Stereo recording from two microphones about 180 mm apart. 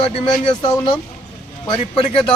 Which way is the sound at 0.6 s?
25° left (ahead or behind).